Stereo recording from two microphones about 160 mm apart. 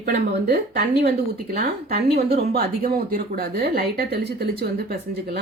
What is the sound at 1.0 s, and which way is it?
Speech, 70° right (ahead or behind).